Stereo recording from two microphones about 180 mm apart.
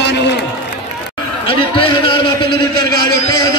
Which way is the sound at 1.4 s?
30° left (ahead or behind).